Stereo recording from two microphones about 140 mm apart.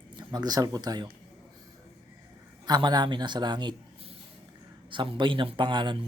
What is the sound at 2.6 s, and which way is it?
Speech, 30° right (ahead or behind).